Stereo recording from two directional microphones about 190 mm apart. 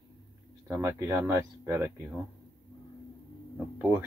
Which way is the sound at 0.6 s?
15° right (ahead or behind).